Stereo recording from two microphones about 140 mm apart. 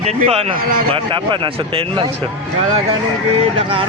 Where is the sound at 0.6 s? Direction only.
85° right.